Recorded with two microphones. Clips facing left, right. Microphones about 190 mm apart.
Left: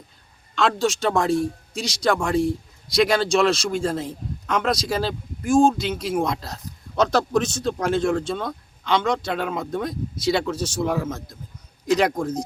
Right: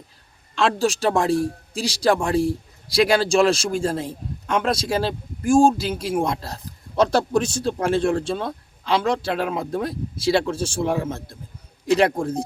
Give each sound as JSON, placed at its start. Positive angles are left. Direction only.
{"t": 0.5, "sound": "speech", "side_deg": -30}